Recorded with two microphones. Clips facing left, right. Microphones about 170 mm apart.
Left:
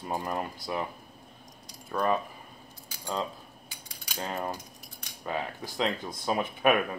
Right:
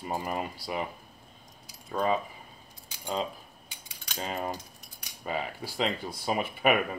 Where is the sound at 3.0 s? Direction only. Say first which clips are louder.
Right 1 dB; 20° right (ahead or behind).